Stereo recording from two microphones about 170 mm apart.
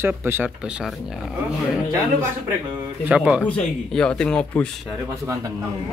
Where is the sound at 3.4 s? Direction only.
5° left (ahead or behind).